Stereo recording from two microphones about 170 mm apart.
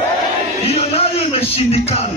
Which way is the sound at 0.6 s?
35° left (ahead or behind).